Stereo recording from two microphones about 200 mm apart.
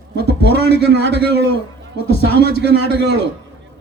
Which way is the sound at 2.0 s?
50° left (ahead or behind).